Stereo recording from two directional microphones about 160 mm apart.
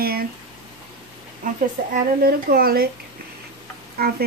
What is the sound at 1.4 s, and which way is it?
Speech, 55° right (ahead or behind).